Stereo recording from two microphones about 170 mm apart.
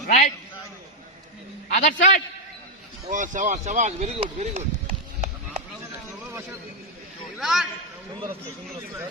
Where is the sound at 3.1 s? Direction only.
50° right (ahead or behind).